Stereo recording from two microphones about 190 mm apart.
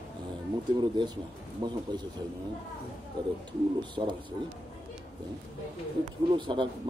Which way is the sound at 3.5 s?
25° right (ahead or behind).